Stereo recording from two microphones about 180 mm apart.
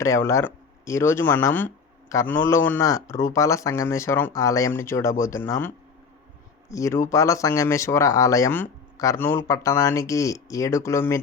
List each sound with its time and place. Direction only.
0.0 s speech: 15° left (ahead or behind)